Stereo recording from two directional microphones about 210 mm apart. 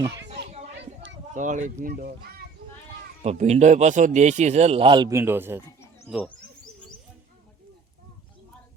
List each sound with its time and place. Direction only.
1.3 s speech: 35° right (ahead or behind)
3.2 s speech: 30° right (ahead or behind); by 6.3 s centre (ahead or behind)